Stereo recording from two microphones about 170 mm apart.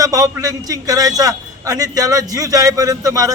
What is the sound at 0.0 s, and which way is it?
A man's voice, 20° right (ahead or behind).